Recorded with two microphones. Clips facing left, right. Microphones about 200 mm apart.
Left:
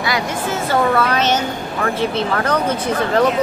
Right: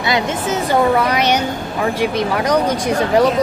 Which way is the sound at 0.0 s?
20° right (ahead or behind).